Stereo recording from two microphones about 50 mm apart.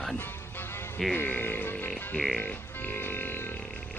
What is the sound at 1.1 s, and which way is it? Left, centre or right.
Speech, left.